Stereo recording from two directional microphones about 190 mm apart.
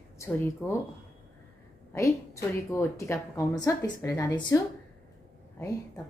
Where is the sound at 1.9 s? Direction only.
15° left (ahead or behind).